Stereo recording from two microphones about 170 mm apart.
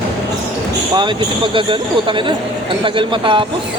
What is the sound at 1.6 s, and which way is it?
Speech, 30° right (ahead or behind).